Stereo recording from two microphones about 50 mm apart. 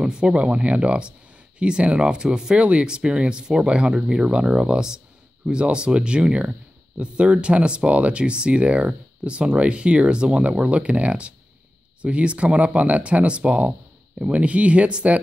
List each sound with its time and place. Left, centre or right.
0.0 s speech: centre